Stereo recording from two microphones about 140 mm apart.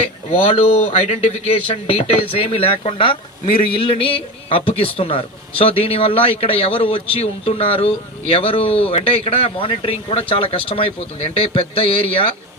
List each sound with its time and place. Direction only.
0.3 s speech: 40° left (ahead or behind)